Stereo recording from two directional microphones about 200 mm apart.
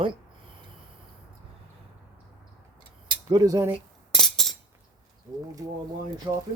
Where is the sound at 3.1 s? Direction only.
20° right (ahead or behind).